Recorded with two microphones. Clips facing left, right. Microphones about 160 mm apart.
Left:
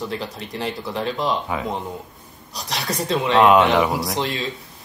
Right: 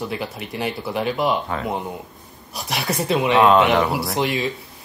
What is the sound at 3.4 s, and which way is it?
Speech, 15° left (ahead or behind).